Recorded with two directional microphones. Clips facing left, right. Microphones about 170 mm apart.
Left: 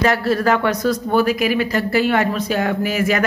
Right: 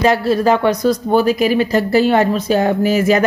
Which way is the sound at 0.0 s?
25° right (ahead or behind).